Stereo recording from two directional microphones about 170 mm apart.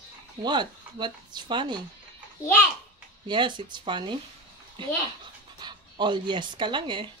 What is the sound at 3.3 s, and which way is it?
Speech, 30° right (ahead or behind).